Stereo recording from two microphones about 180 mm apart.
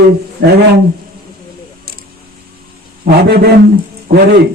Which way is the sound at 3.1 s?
65° right (ahead or behind).